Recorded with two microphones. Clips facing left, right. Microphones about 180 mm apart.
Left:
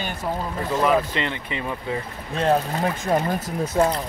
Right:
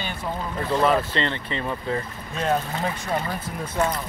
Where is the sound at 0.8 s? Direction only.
10° left (ahead or behind).